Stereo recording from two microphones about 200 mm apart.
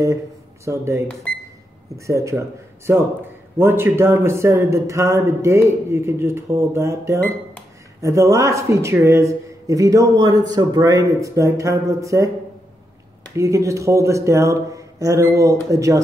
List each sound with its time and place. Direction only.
0.7 s a man's voice: 15° right (ahead or behind)
1.3 s cash register: 5° left (ahead or behind)
2.0 s a man's voice: 15° right (ahead or behind)
13.4 s a man's voice: 15° right (ahead or behind)